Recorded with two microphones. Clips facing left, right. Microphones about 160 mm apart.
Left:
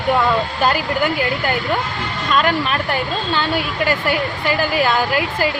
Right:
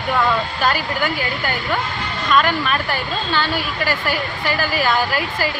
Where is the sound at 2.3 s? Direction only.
25° left (ahead or behind).